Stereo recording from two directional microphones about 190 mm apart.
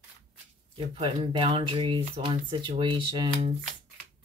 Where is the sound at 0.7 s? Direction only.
25° right (ahead or behind).